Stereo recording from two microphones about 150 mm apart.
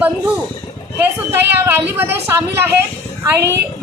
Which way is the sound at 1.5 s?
15° right (ahead or behind).